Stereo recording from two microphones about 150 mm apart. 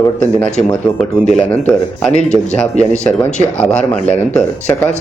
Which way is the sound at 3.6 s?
10° left (ahead or behind).